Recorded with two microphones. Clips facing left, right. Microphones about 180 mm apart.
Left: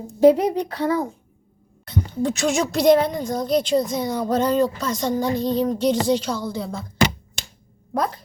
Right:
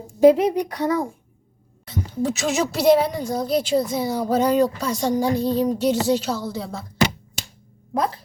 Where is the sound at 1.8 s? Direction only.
5° right (ahead or behind).